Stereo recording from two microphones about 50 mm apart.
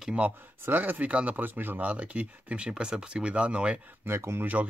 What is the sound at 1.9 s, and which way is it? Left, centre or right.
Speech, right.